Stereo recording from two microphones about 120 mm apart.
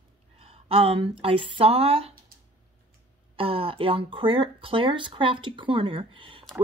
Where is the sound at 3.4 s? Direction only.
50° right (ahead or behind).